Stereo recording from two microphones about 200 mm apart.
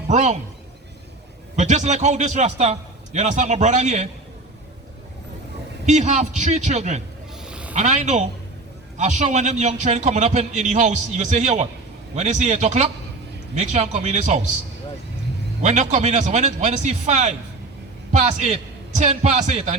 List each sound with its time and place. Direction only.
0.1 s a man's voice: 35° right (ahead or behind)
1.5 s a man's voice: 35° right (ahead or behind)
5.8 s a man's voice: 35° right (ahead or behind)
7.4 s vehicle: 5° right (ahead or behind)
7.7 s a man's voice: 35° right (ahead or behind)
15.6 s a man's voice: 35° right (ahead or behind)